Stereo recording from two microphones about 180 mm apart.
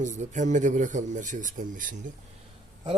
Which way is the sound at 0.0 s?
40° right (ahead or behind).